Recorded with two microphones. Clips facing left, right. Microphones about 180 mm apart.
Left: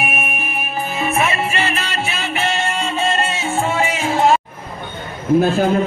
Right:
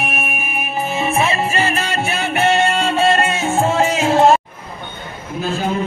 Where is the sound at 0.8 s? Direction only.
25° right (ahead or behind); by 4.4 s 40° right (ahead or behind).